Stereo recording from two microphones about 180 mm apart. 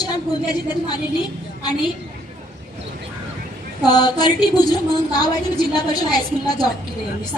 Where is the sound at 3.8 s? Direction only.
20° left (ahead or behind).